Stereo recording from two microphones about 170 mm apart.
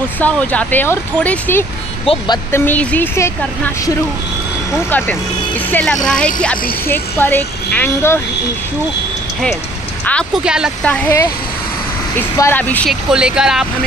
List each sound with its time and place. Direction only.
0.2 s speech: 10° left (ahead or behind)
2.0 s speech: 25° left (ahead or behind)
2.5 s speech: 10° left (ahead or behind)
10.3 s speech: 5° right (ahead or behind)
10.9 s speech: 10° left (ahead or behind)
13.1 s speech: 5° right (ahead or behind)